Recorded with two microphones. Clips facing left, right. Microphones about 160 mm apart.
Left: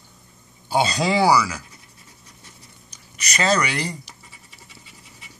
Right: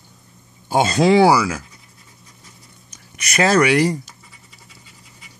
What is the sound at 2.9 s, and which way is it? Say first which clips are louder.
Speech: right 6 dB; 55° right (ahead or behind).